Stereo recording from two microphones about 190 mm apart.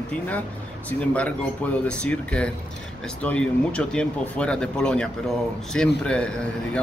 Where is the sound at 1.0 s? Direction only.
5° left (ahead or behind).